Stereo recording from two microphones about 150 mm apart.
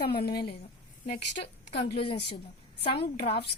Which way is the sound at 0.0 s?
90° left.